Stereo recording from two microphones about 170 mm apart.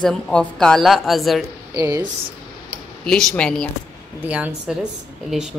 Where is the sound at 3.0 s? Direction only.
5° left (ahead or behind).